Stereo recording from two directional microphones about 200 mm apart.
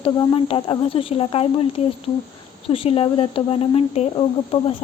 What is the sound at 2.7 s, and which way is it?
Speech, 30° left (ahead or behind).